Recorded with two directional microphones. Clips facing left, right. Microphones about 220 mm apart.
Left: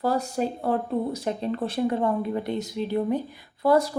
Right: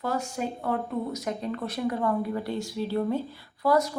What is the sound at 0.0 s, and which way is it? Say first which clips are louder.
Speech: left 5 dB; 35° left (ahead or behind).